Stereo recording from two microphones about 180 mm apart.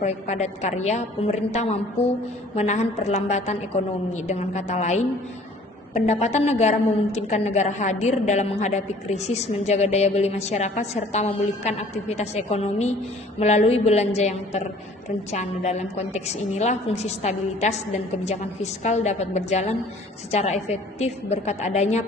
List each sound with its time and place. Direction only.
0.0 s a woman's voice: 35° left (ahead or behind)